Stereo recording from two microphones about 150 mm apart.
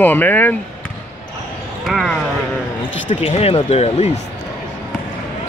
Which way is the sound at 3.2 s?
40° left (ahead or behind).